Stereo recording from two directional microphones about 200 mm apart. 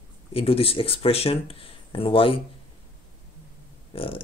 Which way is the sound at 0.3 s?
30° left (ahead or behind).